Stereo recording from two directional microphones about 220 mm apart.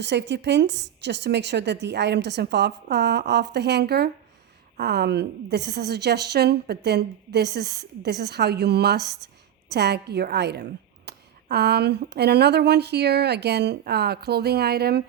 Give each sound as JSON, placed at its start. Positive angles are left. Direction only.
{"t": 0.0, "sound": "speech", "side_deg": -50}